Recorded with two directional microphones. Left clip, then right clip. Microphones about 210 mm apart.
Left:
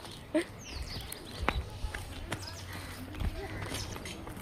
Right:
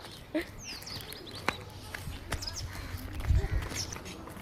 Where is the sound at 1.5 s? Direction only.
20° right (ahead or behind).